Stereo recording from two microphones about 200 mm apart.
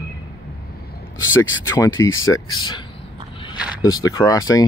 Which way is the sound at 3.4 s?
20° left (ahead or behind).